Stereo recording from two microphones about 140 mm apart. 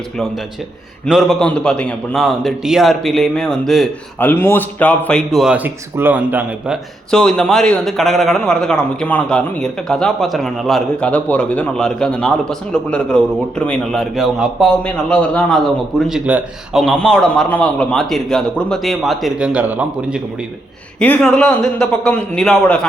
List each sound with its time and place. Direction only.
1.1 s a man's voice: centre (ahead or behind)
4.2 s a man's voice: 15° left (ahead or behind); by 5.5 s centre (ahead or behind)
5.5 s speech: 15° right (ahead or behind)
7.1 s a man's voice: 5° left (ahead or behind)
16.8 s a man's voice: 5° left (ahead or behind)
21.0 s a man's voice: 5° left (ahead or behind)